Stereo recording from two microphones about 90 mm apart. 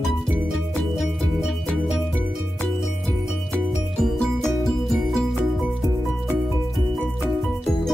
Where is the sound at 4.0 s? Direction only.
Centre (ahead or behind).